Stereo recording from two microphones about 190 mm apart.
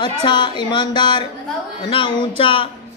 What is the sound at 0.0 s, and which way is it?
A man's voice, 25° left (ahead or behind).